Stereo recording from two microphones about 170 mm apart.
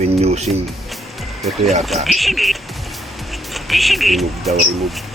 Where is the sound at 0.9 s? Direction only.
Centre (ahead or behind).